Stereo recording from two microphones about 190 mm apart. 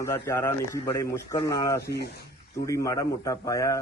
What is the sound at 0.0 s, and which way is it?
A man's voice, 15° left (ahead or behind).